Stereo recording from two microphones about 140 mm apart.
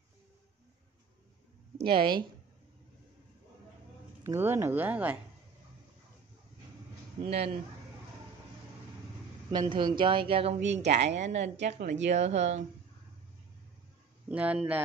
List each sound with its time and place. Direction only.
1.9 s speech: 35° right (ahead or behind)
4.2 s speech: 15° right (ahead or behind)
7.2 s speech: 40° right (ahead or behind)
9.5 s speech: 35° right (ahead or behind); by 12.6 s 55° right (ahead or behind)
14.3 s speech: 10° right (ahead or behind)